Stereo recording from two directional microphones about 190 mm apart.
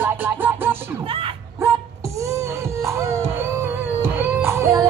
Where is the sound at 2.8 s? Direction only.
15° right (ahead or behind).